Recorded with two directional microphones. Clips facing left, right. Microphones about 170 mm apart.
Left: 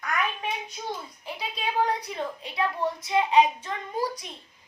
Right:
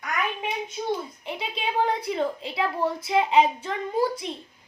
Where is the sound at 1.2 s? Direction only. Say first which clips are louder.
Right 2 dB; 25° right (ahead or behind).